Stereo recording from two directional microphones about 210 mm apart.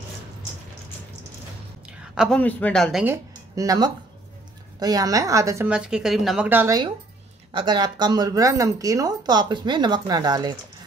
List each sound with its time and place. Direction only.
1.9 s a woman's voice: centre (ahead or behind)
3.5 s a woman's voice: 15° right (ahead or behind)